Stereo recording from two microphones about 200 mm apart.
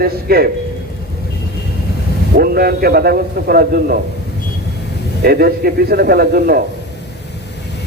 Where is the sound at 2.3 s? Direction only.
50° right (ahead or behind).